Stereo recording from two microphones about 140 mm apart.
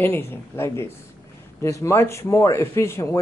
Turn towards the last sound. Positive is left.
turn(degrees=20)  # may be behind; listen again after turning